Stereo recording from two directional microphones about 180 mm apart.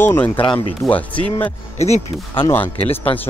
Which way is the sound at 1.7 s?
35° left (ahead or behind).